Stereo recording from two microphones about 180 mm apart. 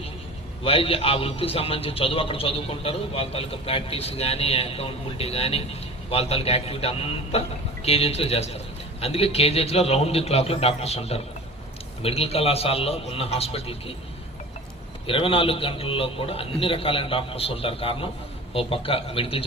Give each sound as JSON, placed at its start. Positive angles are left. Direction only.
{"t": 0.6, "sound": "a man's voice", "side_deg": 30}
{"t": 15.0, "sound": "a man's voice", "side_deg": 30}